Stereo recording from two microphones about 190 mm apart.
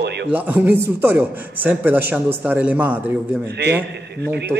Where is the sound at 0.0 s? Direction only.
65° right (ahead or behind).